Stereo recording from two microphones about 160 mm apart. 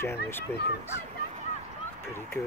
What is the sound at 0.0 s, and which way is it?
Speech, 15° left (ahead or behind).